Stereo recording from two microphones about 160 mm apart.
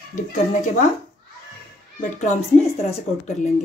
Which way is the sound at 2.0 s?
45° left (ahead or behind).